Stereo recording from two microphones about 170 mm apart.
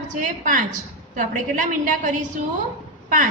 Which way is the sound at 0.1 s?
50° right (ahead or behind).